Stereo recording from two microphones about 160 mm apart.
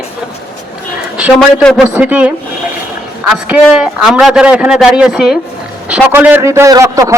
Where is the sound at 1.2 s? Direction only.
Centre (ahead or behind).